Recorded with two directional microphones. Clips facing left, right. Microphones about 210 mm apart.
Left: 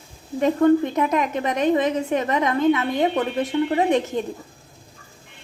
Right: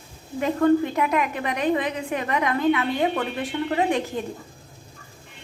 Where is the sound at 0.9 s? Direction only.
20° left (ahead or behind).